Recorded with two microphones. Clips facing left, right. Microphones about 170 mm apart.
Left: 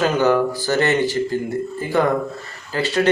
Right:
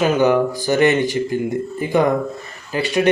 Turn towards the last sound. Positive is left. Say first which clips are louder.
# right 2 dB
turn(degrees=-15)  # may be behind; listen again after turning